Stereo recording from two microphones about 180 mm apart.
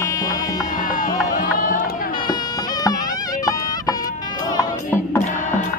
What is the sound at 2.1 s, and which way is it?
Music, 25° left (ahead or behind).